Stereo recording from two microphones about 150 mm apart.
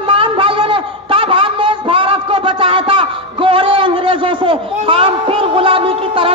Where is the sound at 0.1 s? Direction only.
35° right (ahead or behind).